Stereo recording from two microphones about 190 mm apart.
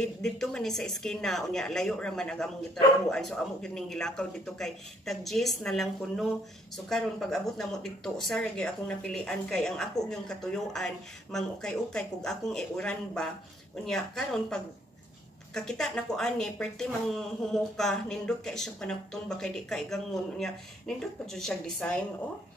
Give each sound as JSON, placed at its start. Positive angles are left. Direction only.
{"t": 0.0, "sound": "speech", "side_deg": 5}